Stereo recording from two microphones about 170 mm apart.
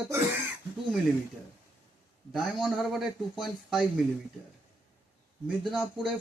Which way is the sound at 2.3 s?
Centre (ahead or behind).